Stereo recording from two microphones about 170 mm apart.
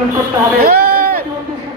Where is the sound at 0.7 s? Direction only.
60° right (ahead or behind).